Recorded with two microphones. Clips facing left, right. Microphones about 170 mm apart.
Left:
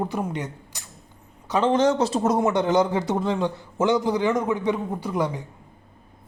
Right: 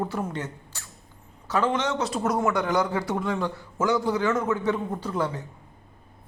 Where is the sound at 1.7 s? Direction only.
35° left (ahead or behind); by 5.4 s 15° left (ahead or behind).